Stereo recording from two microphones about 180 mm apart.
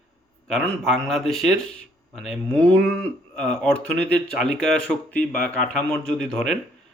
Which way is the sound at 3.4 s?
5° left (ahead or behind).